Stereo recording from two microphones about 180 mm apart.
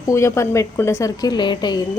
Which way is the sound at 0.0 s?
15° left (ahead or behind).